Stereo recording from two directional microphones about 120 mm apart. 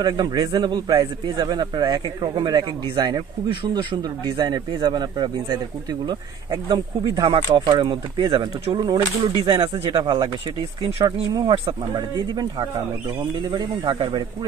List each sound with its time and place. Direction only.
0.0 s a man's voice: 40° right (ahead or behind)